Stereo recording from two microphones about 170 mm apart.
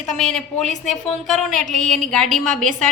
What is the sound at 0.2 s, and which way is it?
A woman's voice, 5° left (ahead or behind).